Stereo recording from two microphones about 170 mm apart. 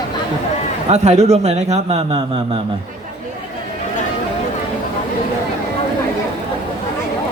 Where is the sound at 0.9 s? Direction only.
40° right (ahead or behind).